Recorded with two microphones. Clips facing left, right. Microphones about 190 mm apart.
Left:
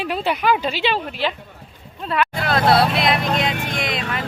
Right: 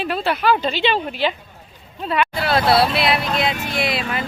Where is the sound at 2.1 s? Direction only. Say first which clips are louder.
Right 1 dB; 5° right (ahead or behind).